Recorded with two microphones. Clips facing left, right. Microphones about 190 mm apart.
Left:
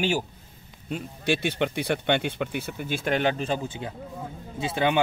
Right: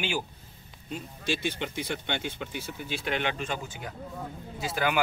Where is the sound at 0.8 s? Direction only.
65° left (ahead or behind).